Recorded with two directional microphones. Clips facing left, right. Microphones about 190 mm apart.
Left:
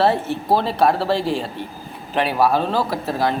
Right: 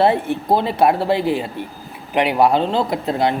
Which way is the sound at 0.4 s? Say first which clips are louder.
Right 1 dB; 15° right (ahead or behind).